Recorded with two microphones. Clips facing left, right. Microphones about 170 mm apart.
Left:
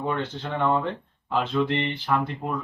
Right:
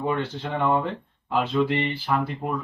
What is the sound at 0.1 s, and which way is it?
Speech, 10° right (ahead or behind).